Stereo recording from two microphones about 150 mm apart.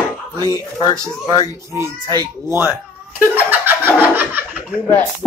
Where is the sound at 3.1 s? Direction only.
10° right (ahead or behind).